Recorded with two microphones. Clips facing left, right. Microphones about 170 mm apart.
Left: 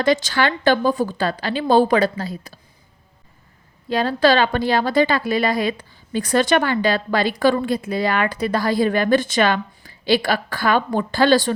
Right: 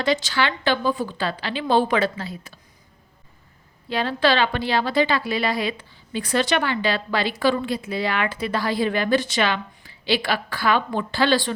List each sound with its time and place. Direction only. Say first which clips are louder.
0.0 s a woman's voice: left 4 dB; 45° left (ahead or behind)
3.8 s a woman's voice: left 4 dB; 40° left (ahead or behind)